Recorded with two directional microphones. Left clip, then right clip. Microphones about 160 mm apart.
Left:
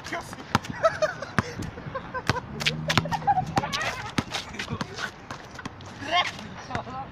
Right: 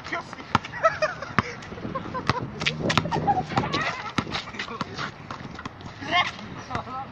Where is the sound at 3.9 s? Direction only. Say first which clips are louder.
Right 1 dB; 15° left (ahead or behind).